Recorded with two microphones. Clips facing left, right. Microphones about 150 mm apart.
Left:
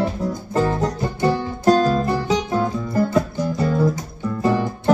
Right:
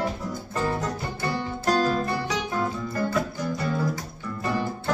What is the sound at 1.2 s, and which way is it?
Music, 20° left (ahead or behind).